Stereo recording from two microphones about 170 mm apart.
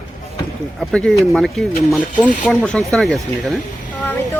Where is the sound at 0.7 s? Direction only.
Centre (ahead or behind).